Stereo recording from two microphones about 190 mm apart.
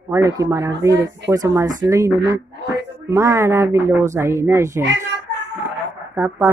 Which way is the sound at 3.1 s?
15° right (ahead or behind).